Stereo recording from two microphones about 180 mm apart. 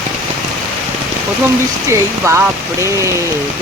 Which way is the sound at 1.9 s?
15° right (ahead or behind).